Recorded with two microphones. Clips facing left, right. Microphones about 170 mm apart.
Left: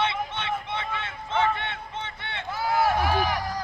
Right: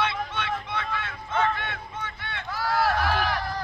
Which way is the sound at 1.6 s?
25° left (ahead or behind).